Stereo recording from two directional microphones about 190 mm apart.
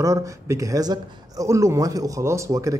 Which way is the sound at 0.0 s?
15° right (ahead or behind).